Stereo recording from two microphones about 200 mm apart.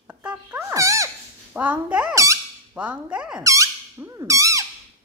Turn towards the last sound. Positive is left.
turn(degrees=-15)  # may be behind; listen again after turning